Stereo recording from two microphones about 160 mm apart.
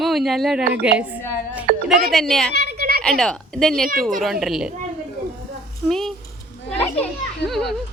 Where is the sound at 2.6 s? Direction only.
75° right (ahead or behind).